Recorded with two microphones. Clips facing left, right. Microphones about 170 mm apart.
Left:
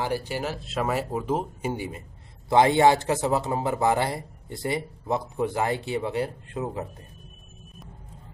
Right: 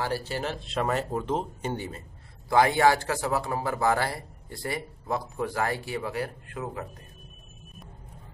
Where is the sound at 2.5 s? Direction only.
20° left (ahead or behind).